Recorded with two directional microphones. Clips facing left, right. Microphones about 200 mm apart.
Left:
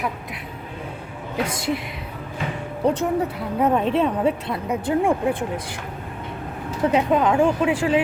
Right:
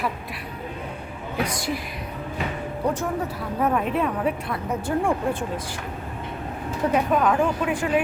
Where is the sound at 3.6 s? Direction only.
25° left (ahead or behind).